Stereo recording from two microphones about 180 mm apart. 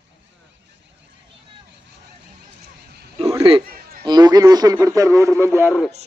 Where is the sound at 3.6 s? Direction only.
55° right (ahead or behind).